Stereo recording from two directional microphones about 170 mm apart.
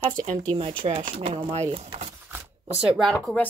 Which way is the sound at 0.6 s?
35° right (ahead or behind).